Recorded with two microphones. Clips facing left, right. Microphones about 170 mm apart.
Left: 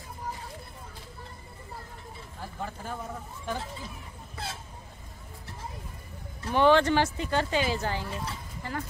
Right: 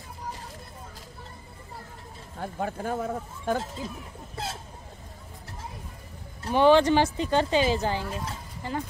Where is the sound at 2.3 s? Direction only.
55° right (ahead or behind).